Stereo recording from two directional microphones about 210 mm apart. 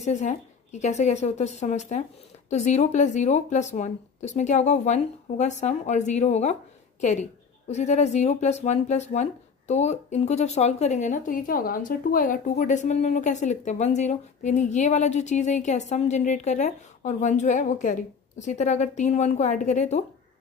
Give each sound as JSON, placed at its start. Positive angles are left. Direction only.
{"t": 0.0, "sound": "speech", "side_deg": 35}